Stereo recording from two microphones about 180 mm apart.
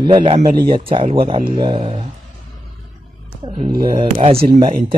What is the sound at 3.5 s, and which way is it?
Speech, 45° right (ahead or behind).